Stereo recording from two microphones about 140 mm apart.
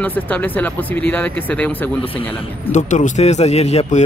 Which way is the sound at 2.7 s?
60° left (ahead or behind).